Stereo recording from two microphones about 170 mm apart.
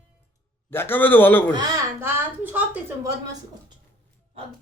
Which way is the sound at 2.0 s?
10° right (ahead or behind).